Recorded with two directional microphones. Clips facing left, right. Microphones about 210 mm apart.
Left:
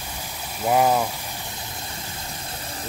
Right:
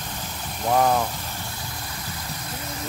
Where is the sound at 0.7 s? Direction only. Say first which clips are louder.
Left 1 dB; 10° left (ahead or behind).